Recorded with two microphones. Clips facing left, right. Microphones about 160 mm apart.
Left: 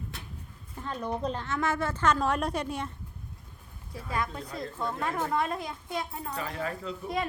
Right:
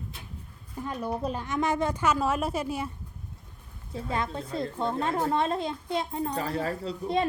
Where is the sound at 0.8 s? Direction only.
15° right (ahead or behind).